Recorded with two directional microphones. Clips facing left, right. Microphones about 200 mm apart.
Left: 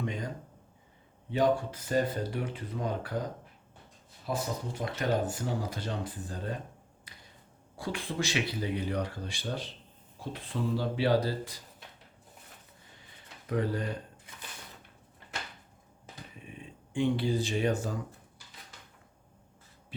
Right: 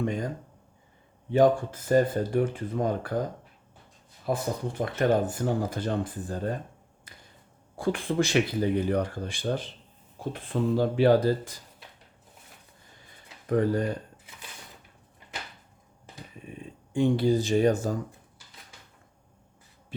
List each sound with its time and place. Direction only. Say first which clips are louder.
0.0 s a sound: right 6 dB; 45° right (ahead or behind)
1.3 s speech: right 6 dB; 45° right (ahead or behind)
4.3 s speech: right 5 dB; 55° right (ahead or behind)
7.8 s speech: right 8 dB; 50° right (ahead or behind)
13.5 s speech: right 7 dB; 45° right (ahead or behind)
16.9 s speech: right 5 dB; 40° right (ahead or behind)